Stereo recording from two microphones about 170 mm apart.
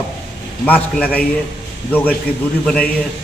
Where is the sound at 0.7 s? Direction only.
10° left (ahead or behind).